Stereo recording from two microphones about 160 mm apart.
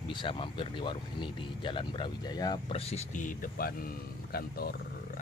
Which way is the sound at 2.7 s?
40° left (ahead or behind).